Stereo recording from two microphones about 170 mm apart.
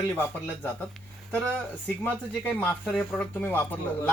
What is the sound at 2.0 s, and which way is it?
Speech, 10° left (ahead or behind).